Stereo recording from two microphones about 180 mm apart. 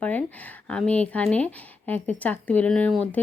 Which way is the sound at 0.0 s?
10° left (ahead or behind).